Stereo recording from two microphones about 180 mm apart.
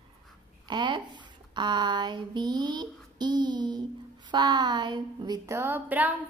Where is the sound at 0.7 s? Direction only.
25° right (ahead or behind).